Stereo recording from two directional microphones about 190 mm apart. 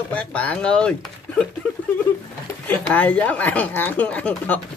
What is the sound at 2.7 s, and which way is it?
Speech, 10° left (ahead or behind).